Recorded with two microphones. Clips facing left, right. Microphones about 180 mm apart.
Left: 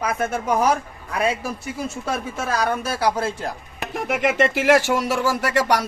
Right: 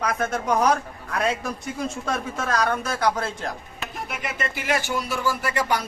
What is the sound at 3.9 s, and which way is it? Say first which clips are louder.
Speech: left 12 dB; 90° left.